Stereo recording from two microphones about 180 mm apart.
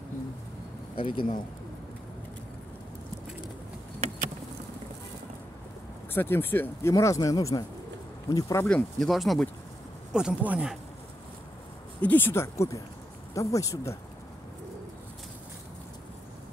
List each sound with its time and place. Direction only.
0.9 s speech: 30° left (ahead or behind)
6.1 s speech: 10° left (ahead or behind)
8.6 s speech: 5° left (ahead or behind)
12.0 s speech: 10° left (ahead or behind)